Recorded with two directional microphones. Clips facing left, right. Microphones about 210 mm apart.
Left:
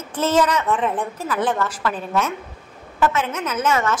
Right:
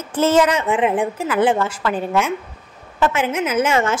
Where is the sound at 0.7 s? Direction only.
85° right.